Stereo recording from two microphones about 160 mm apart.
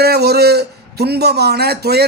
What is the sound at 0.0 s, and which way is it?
A man's voice, 85° right.